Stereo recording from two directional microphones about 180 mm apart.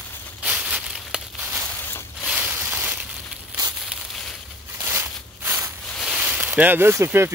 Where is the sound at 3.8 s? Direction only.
Centre (ahead or behind).